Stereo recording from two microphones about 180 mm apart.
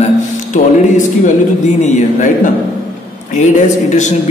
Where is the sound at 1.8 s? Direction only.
40° left (ahead or behind).